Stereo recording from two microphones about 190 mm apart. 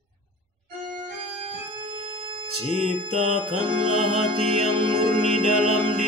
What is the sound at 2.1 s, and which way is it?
Music, 30° right (ahead or behind).